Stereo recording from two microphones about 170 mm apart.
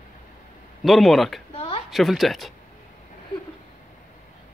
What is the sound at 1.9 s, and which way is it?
Speech, centre (ahead or behind).